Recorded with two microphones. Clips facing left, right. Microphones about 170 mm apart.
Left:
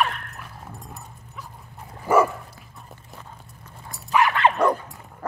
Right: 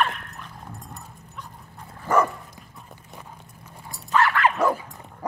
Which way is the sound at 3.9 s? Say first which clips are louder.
Left 1 dB; 20° left (ahead or behind).